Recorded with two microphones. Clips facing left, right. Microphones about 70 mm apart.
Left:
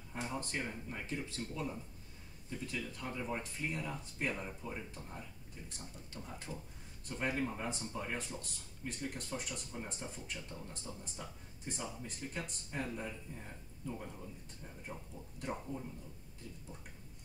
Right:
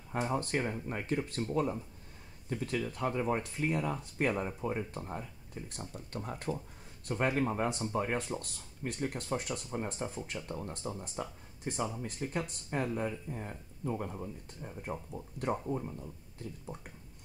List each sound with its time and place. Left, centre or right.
0.2 s speech: right
9.9 s speech: right
10.5 s speech: right